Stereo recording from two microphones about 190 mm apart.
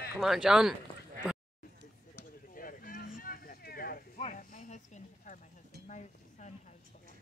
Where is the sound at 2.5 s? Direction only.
45° left (ahead or behind).